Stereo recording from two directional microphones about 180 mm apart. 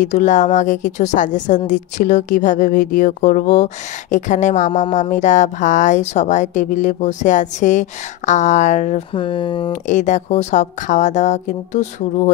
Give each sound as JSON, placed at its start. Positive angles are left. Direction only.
{"t": 0.0, "sound": "speech", "side_deg": 40}
{"t": 9.1, "sound": "speech", "side_deg": 30}
{"t": 9.7, "sound": "a woman's voice", "side_deg": 45}